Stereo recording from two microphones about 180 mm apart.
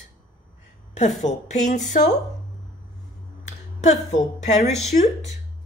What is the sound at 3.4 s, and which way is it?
A woman's voice, 40° left (ahead or behind).